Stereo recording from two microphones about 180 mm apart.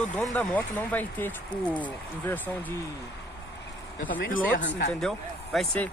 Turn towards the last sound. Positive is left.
turn(degrees=0)  # may be behind; listen again after turning